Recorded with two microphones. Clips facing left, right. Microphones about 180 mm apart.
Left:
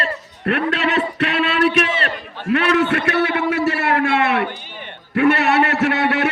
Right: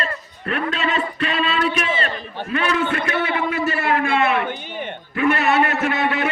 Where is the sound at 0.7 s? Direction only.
75° left (ahead or behind).